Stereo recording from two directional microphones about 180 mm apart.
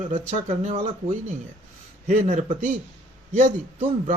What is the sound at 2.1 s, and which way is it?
Speech, 40° right (ahead or behind).